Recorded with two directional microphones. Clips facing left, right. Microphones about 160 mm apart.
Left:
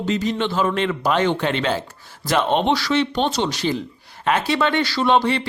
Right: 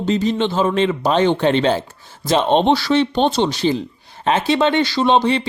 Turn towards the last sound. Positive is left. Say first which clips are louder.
# right 2 dB
turn(degrees=-20)  # may be behind; listen again after turning